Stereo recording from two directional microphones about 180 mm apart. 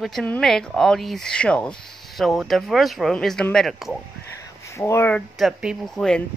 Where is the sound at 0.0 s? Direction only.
5° left (ahead or behind).